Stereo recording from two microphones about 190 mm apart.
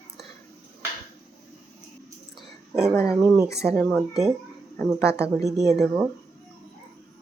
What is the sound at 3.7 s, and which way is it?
Speech, 10° left (ahead or behind).